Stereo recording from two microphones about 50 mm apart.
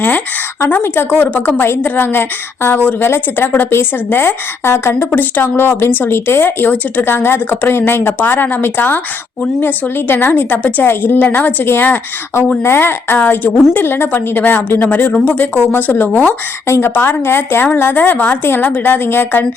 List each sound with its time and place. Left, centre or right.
0.8 s speech: left
1.2 s a woman's voice: left
16.6 s a woman's voice: left
16.9 s speech: left
17.7 s a woman's voice: left